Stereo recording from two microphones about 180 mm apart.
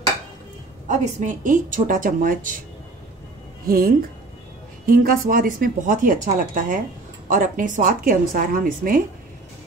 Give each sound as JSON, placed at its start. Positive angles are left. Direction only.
{"t": 0.8, "sound": "a woman's voice", "side_deg": -45}
{"t": 3.6, "sound": "a woman's voice", "side_deg": -55}